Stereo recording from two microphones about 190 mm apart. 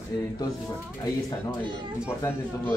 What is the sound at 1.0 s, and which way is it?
Speech, 20° left (ahead or behind).